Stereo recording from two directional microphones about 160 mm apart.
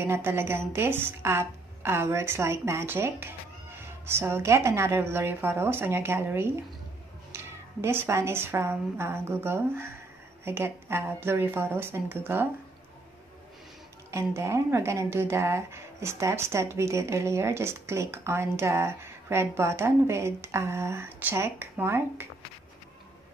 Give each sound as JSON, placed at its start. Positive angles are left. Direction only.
{"t": 0.0, "sound": "speech", "side_deg": -15}
{"t": 14.1, "sound": "speech", "side_deg": -15}